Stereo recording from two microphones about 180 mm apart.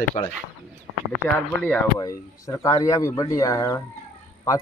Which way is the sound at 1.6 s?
10° left (ahead or behind).